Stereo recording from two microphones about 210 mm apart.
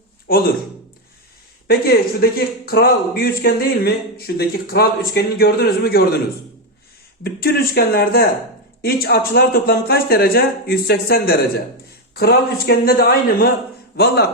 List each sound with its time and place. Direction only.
0.3 s speech: 45° left (ahead or behind)
1.6 s speech: 45° left (ahead or behind)
7.3 s speech: 45° left (ahead or behind)